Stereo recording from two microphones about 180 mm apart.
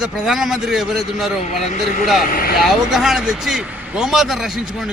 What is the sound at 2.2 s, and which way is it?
Speech, 50° left (ahead or behind).